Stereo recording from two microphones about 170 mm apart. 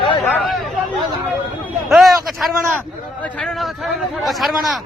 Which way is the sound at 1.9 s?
Centre (ahead or behind).